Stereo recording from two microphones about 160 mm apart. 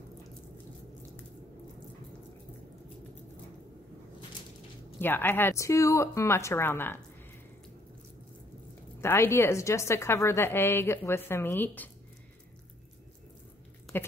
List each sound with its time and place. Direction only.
5.0 s a woman's voice: 15° left (ahead or behind)
9.0 s a woman's voice: 15° left (ahead or behind)
13.9 s speech: 15° left (ahead or behind)